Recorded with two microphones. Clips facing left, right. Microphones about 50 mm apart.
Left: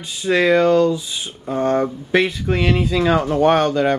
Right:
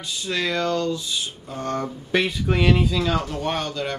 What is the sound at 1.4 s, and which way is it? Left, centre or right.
Speech, left.